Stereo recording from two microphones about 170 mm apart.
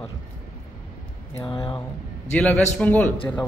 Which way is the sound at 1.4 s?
30° left (ahead or behind).